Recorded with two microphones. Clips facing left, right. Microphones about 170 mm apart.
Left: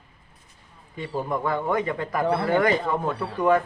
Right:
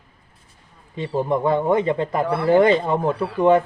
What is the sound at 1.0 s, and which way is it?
Speech, 25° right (ahead or behind).